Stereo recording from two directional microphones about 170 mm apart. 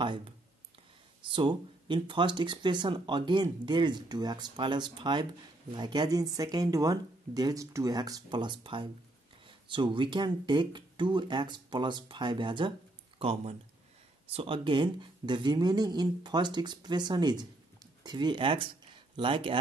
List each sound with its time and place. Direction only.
1.2 s speech: 30° right (ahead or behind)